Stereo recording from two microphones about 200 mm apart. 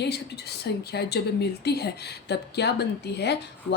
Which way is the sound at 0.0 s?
55° left (ahead or behind).